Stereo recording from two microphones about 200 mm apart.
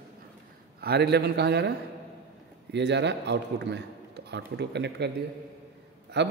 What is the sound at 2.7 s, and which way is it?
A man's voice, 60° right (ahead or behind).